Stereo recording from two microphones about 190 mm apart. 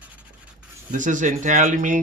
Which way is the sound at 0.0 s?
10° right (ahead or behind).